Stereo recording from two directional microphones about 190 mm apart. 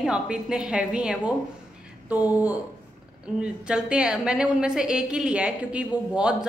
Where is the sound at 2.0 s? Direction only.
10° right (ahead or behind).